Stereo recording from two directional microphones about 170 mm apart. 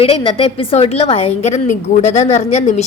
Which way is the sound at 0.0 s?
35° left (ahead or behind).